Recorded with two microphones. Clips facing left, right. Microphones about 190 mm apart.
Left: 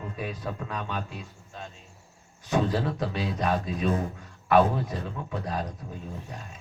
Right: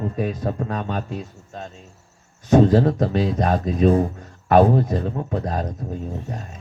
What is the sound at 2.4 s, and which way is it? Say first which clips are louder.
A man's voice: right 11 dB; 45° right (ahead or behind).